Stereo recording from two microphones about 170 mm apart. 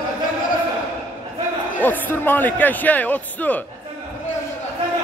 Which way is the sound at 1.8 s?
10° left (ahead or behind).